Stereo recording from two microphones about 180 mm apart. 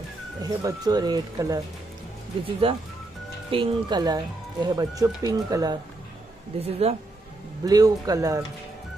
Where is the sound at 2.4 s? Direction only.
30° right (ahead or behind).